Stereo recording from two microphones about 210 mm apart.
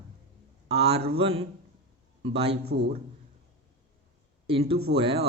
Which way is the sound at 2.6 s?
50° right (ahead or behind).